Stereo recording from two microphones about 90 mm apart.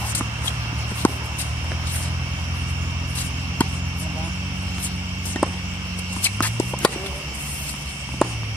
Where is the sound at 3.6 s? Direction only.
15° left (ahead or behind).